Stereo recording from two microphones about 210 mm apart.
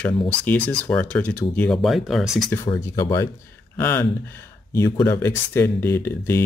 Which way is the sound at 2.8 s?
15° left (ahead or behind).